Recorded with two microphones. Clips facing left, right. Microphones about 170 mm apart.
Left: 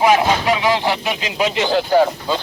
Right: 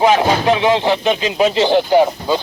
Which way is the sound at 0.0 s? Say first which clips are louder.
Right 2 dB; 30° right (ahead or behind).